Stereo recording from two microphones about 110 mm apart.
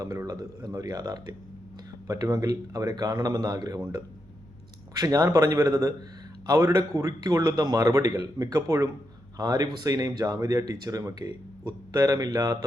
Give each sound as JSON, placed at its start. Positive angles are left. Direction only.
{"t": 0.0, "sound": "speech", "side_deg": -35}
{"t": 4.9, "sound": "speech", "side_deg": -35}